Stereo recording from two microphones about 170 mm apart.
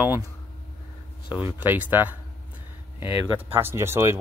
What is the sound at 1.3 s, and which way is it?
Speech, 10° right (ahead or behind).